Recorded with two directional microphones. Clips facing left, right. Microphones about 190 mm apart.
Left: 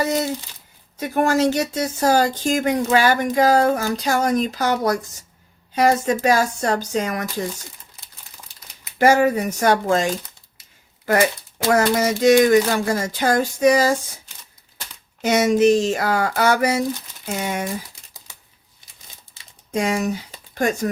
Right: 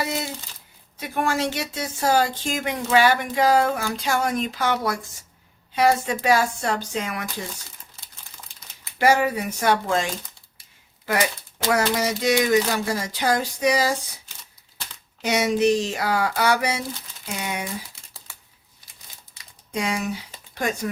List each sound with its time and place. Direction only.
0.9 s speech: 45° left (ahead or behind)
9.0 s speech: 45° left (ahead or behind)
11.7 s speech: 50° left (ahead or behind)
15.2 s speech: 45° left (ahead or behind)
19.7 s speech: 45° left (ahead or behind)